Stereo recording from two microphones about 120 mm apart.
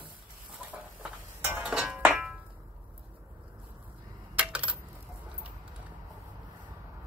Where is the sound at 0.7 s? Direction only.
15° right (ahead or behind).